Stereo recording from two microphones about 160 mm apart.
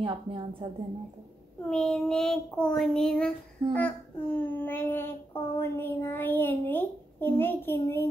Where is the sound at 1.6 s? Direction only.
5° left (ahead or behind).